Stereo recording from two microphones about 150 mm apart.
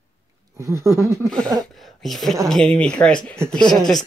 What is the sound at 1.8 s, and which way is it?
A woman's voice, centre (ahead or behind).